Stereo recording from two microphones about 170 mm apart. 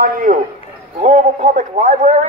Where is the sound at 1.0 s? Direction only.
45° right (ahead or behind).